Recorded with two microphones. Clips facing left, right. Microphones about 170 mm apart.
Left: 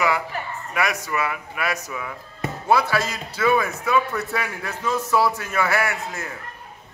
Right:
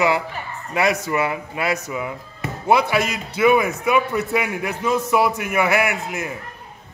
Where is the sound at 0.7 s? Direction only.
25° right (ahead or behind).